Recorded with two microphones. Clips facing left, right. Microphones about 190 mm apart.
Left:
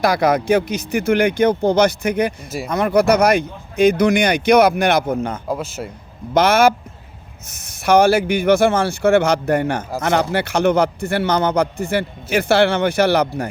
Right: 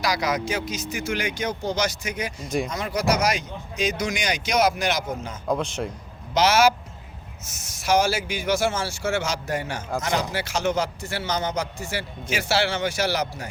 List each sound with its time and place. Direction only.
0.0 s a man's voice: 55° left (ahead or behind)
5.5 s speech: 5° left (ahead or behind)
6.3 s a man's voice: 55° left (ahead or behind)